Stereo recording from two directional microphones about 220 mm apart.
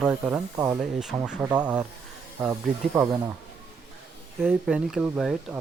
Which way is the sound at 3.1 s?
20° right (ahead or behind).